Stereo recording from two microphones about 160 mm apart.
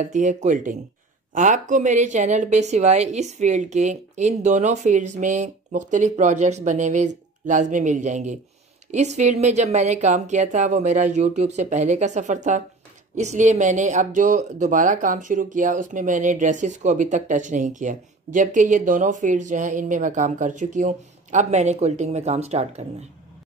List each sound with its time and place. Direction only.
0.0 s speech: 50° right (ahead or behind)